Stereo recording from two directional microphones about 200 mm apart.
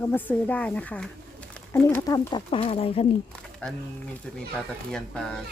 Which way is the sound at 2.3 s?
30° left (ahead or behind).